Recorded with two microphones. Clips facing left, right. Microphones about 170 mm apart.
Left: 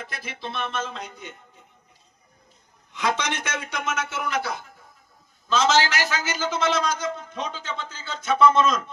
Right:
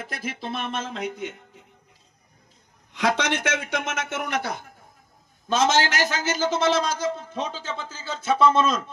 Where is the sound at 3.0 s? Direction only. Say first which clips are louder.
Right 3 dB; 70° right (ahead or behind).